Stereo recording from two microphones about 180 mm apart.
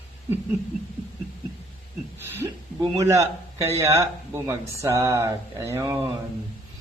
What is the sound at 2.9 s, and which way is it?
A man's voice, 15° right (ahead or behind).